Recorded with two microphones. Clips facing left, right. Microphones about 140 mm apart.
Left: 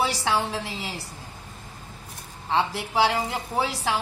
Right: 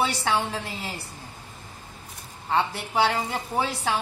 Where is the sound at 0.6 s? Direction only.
90° left.